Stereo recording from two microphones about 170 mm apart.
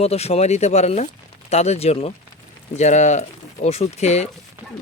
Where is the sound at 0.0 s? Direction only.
40° left (ahead or behind).